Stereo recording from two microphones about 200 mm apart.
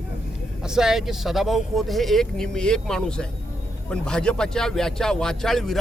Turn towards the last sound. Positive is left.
turn(degrees=0)  # may be behind; listen again after turning